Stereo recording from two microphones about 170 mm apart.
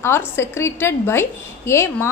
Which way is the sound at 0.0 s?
15° left (ahead or behind).